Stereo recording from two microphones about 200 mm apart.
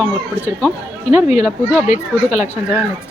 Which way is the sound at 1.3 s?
35° left (ahead or behind).